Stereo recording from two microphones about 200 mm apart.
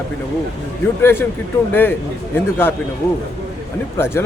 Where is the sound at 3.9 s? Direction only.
10° left (ahead or behind).